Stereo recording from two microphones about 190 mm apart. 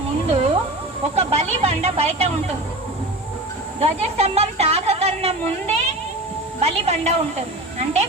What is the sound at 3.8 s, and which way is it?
Speech, 35° right (ahead or behind).